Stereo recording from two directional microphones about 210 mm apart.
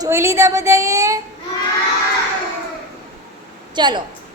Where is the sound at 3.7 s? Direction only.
20° right (ahead or behind).